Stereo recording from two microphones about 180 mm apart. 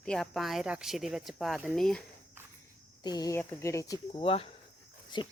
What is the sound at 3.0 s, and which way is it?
Speech, 20° left (ahead or behind).